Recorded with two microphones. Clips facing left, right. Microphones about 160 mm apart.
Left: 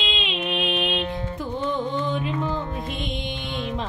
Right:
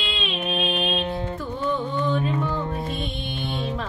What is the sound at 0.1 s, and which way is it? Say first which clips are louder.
Music: right 2 dB; 20° left (ahead or behind).